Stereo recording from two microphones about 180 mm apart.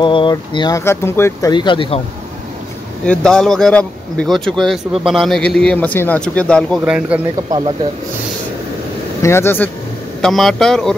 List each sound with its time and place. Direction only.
0.0 s speech: 25° left (ahead or behind)
1.5 s speech: 25° left (ahead or behind)
3.1 s speech: 5° left (ahead or behind)
6.8 s speech: 5° right (ahead or behind)
7.4 s speech: 20° right (ahead or behind)
9.2 s speech: 15° left (ahead or behind)
10.2 s speech: centre (ahead or behind)